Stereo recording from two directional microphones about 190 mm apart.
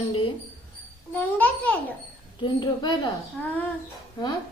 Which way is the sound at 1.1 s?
10° left (ahead or behind).